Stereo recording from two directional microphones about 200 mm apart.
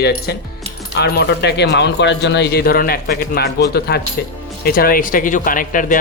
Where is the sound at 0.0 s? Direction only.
55° left (ahead or behind).